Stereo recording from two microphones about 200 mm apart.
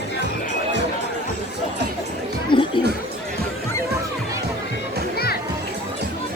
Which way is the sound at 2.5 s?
25° left (ahead or behind).